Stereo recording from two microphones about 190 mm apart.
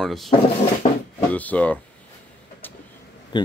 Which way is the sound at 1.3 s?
10° left (ahead or behind).